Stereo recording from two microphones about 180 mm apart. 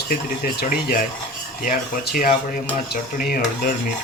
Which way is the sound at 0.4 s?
55° left (ahead or behind).